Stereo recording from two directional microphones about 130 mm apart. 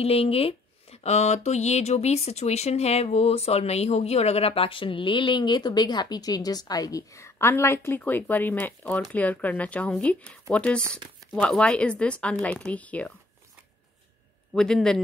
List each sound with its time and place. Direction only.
0.0 s speech: 50° left (ahead or behind); by 13.1 s 10° left (ahead or behind)
14.5 s a man's voice: 5° left (ahead or behind)